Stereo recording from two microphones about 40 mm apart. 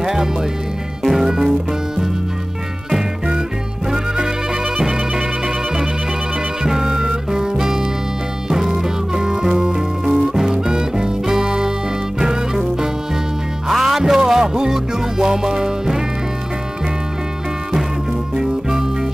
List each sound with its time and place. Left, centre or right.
0.0 s music: centre
3.9 s music: centre
6.6 s music: centre
18.3 s music: centre